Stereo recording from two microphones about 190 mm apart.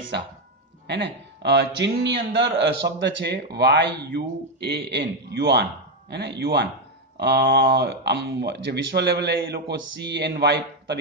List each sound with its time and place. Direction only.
0.1 s speech: 65° right (ahead or behind)